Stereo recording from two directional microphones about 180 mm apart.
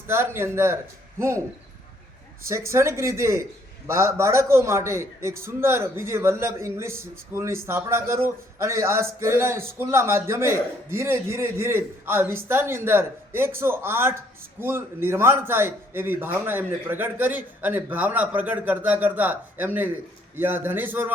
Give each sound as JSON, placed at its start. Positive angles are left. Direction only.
{"t": 0.1, "sound": "a man's voice", "side_deg": -15}
{"t": 2.5, "sound": "a man's voice", "side_deg": -15}